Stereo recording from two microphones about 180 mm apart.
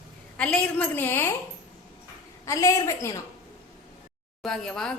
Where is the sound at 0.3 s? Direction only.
5° left (ahead or behind).